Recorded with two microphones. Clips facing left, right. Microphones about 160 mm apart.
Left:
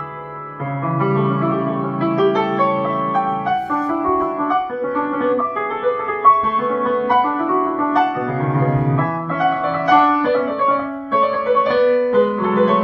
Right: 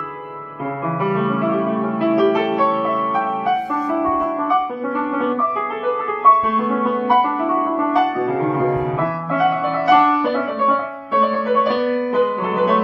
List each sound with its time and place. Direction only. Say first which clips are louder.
1.1 s music: right 1 dB; 15° right (ahead or behind)
6.7 s music: left 1 dB; 15° right (ahead or behind)
11.5 s music: left 6 dB; 10° right (ahead or behind)